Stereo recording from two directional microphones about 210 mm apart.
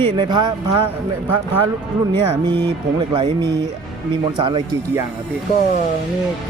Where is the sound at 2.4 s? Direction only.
20° right (ahead or behind).